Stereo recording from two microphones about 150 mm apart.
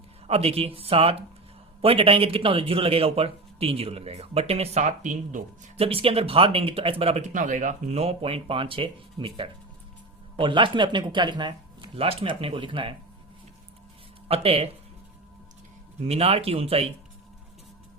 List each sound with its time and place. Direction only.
0.3 s speech: 40° right (ahead or behind)
14.3 s speech: 40° right (ahead or behind)
16.0 s speech: 45° right (ahead or behind)